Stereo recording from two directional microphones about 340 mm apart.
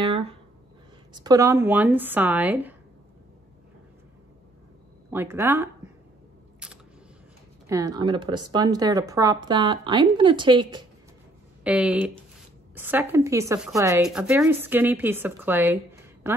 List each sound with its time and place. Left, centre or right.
0.0 s a sound: centre
1.1 s speech: centre
5.1 s speech: centre
6.6 s single-lens reflex camera: centre
7.6 s speech: centre